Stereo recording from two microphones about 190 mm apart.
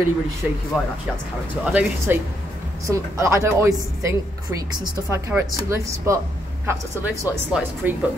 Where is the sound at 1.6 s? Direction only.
5° right (ahead or behind).